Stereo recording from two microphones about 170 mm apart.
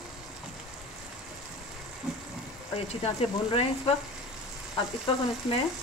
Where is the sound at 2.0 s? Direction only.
Centre (ahead or behind).